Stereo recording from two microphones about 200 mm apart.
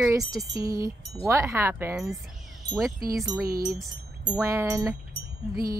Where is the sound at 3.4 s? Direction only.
50° right (ahead or behind).